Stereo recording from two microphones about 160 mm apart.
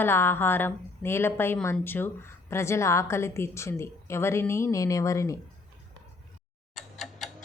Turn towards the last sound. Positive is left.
turn(degrees=0)  # may be behind; listen again after turning